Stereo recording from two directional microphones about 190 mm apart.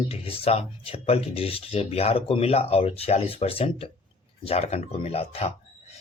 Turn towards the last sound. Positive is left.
turn(degrees=30)  # may be behind; listen again after turning